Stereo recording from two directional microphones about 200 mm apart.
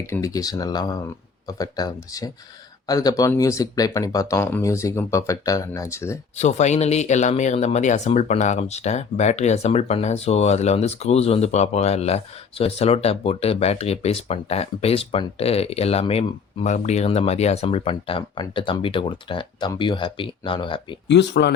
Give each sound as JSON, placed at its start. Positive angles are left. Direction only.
{"t": 0.1, "sound": "speech", "side_deg": 15}
{"t": 6.3, "sound": "speech", "side_deg": 35}
{"t": 21.1, "sound": "speech", "side_deg": 60}